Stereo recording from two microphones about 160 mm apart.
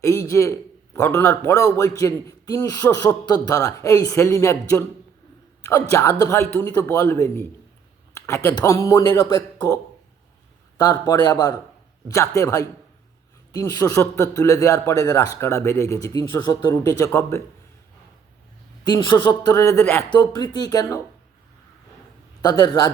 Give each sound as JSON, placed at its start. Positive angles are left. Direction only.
{"t": 0.0, "sound": "a man's voice", "side_deg": 20}
{"t": 5.9, "sound": "a man's voice", "side_deg": 20}
{"t": 18.9, "sound": "a man's voice", "side_deg": 25}
{"t": 20.1, "sound": "a man's voice", "side_deg": 25}
{"t": 22.4, "sound": "a man's voice", "side_deg": 25}